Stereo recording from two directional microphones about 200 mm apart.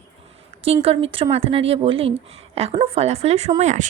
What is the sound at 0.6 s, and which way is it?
A woman's voice, 30° right (ahead or behind).